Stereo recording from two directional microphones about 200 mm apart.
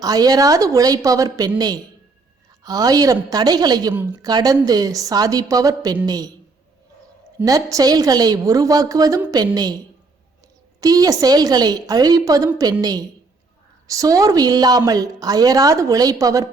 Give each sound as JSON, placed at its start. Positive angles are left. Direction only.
{"t": 0.0, "sound": "a woman's voice", "side_deg": -20}
{"t": 7.4, "sound": "a woman's voice", "side_deg": -15}